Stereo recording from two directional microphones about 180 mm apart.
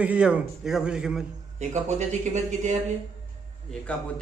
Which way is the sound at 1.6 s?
40° right (ahead or behind).